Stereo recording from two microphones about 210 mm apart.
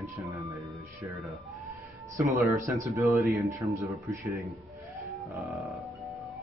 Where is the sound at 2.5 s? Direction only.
15° right (ahead or behind).